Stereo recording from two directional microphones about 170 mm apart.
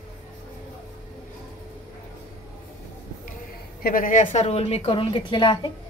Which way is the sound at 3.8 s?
55° left (ahead or behind).